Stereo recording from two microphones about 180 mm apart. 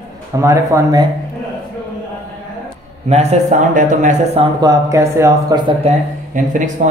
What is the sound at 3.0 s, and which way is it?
A man's voice, 40° right (ahead or behind).